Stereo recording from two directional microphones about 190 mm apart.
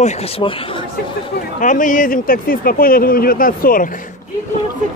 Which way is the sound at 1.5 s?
45° left (ahead or behind).